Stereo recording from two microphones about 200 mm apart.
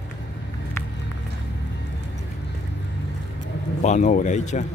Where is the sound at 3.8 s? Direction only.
35° left (ahead or behind).